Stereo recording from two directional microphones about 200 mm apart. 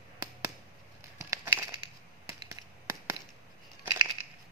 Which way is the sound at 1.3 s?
15° right (ahead or behind).